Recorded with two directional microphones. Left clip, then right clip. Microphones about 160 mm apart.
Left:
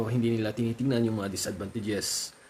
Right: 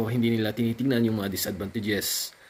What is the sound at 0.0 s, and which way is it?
Speech, 10° left (ahead or behind).